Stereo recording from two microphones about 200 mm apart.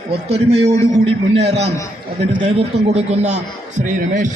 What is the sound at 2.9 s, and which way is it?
Speech, 35° right (ahead or behind).